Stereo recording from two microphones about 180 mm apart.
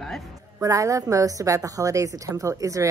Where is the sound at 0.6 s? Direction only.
20° right (ahead or behind).